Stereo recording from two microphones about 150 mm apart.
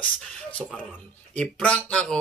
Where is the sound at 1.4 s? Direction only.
10° left (ahead or behind).